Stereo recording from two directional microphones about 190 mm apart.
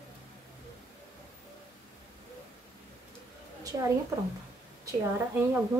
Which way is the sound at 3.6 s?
20° right (ahead or behind).